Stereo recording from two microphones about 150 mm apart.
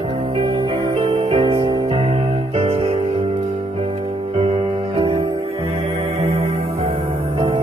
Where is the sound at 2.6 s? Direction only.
45° right (ahead or behind).